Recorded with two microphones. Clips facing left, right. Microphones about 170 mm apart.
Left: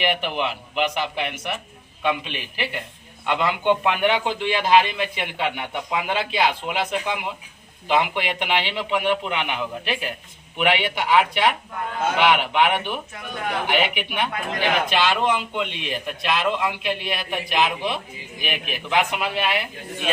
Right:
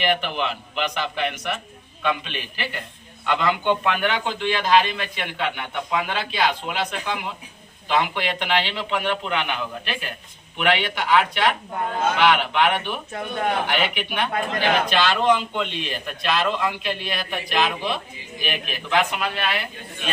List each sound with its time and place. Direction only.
0.0 s a man's voice: 15° left (ahead or behind)